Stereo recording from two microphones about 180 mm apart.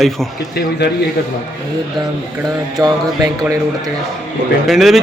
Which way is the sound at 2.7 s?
20° right (ahead or behind).